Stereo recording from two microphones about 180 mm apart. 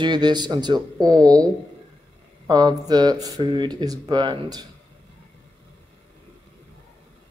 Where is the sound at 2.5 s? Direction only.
20° right (ahead or behind).